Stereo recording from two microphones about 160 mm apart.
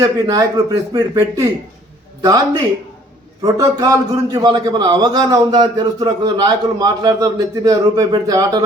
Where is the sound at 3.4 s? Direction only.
20° right (ahead or behind).